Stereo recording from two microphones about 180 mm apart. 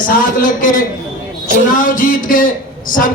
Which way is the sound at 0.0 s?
50° left (ahead or behind).